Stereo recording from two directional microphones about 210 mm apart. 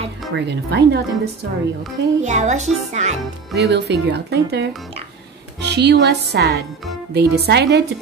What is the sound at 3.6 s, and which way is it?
A woman's voice, 55° right (ahead or behind).